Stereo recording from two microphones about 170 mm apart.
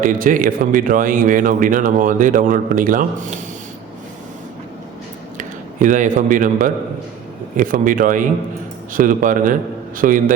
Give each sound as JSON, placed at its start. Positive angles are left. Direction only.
{"t": 0.0, "sound": "a man's voice", "side_deg": -50}
{"t": 5.4, "sound": "a man's voice", "side_deg": -50}